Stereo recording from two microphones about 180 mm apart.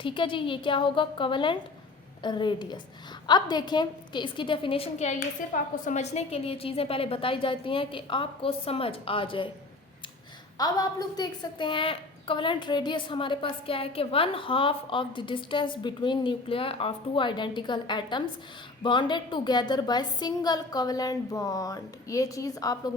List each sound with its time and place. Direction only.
0.0 s a woman's voice: 25° left (ahead or behind)
10.6 s a woman's voice: 20° left (ahead or behind)